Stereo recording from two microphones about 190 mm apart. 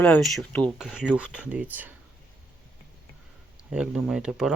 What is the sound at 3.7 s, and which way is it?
Speech, 5° right (ahead or behind).